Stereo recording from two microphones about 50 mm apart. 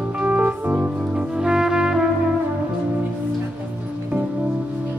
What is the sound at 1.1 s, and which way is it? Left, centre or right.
Music, centre.